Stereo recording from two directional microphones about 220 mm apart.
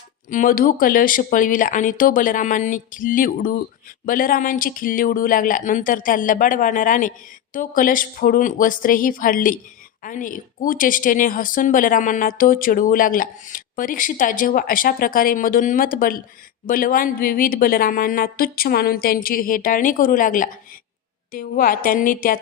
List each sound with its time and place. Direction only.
0.3 s speech: 40° left (ahead or behind)